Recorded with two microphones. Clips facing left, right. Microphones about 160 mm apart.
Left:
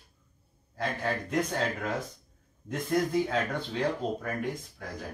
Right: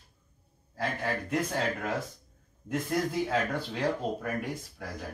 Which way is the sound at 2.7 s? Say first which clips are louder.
Left 2 dB; 5° right (ahead or behind).